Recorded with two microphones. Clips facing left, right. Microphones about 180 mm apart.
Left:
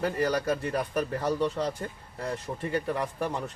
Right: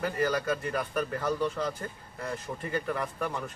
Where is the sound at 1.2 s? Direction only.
30° left (ahead or behind).